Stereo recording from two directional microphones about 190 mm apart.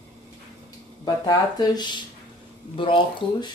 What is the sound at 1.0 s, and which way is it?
Speech, 20° left (ahead or behind).